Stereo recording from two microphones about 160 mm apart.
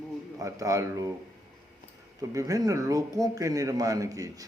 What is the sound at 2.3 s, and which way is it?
Speech, 20° right (ahead or behind).